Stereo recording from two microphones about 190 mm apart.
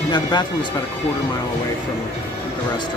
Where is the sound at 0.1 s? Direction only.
25° left (ahead or behind).